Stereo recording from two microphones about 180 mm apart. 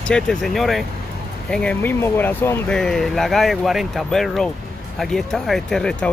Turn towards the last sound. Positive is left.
turn(degrees=5)  # may be behind; listen again after turning